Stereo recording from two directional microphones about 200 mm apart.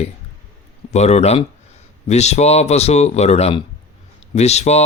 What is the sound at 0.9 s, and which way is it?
Speech, 35° left (ahead or behind).